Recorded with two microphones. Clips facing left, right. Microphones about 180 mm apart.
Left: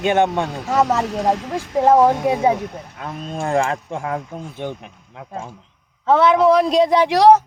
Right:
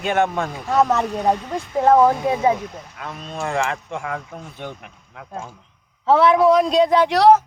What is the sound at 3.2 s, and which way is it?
Speech, 45° left (ahead or behind).